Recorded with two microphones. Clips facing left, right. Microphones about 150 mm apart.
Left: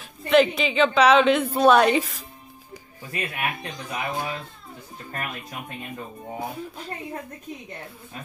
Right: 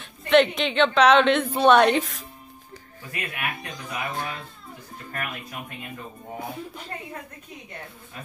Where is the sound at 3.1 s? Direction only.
30° left (ahead or behind).